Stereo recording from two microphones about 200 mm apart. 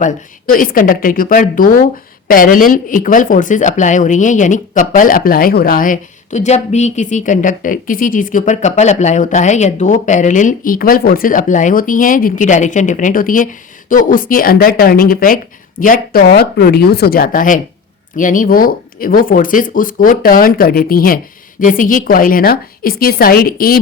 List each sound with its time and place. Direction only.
0.0 s a woman's voice: 45° left (ahead or behind)